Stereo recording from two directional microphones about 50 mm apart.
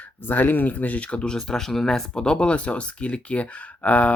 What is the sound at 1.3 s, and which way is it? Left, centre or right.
Speech, centre.